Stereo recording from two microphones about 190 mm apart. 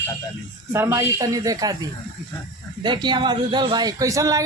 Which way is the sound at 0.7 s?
15° right (ahead or behind).